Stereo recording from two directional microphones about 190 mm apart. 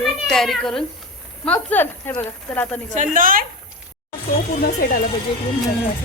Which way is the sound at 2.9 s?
45° right (ahead or behind).